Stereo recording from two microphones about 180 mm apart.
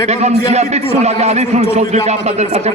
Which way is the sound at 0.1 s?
40° right (ahead or behind).